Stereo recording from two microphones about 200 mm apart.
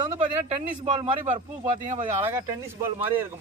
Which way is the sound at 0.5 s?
25° right (ahead or behind).